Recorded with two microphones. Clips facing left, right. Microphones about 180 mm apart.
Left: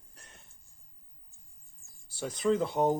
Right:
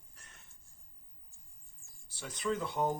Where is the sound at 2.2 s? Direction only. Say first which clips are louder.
Left 7 dB; 35° left (ahead or behind).